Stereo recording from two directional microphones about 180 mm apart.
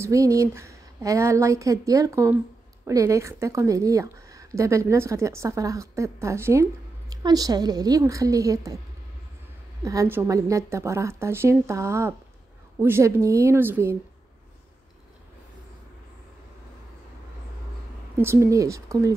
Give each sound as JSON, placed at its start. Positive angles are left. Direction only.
{"t": 0.0, "sound": "a woman's voice", "side_deg": -15}
{"t": 9.8, "sound": "a woman's voice", "side_deg": -15}
{"t": 18.1, "sound": "a woman's voice", "side_deg": -15}